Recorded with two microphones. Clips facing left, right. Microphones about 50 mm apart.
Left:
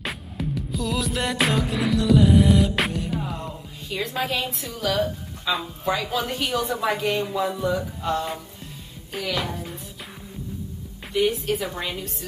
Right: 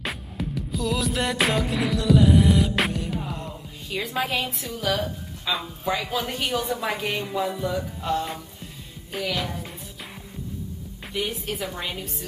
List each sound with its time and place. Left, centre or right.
0.0 s music: centre
8.0 s a woman's voice: centre
11.4 s a woman's voice: centre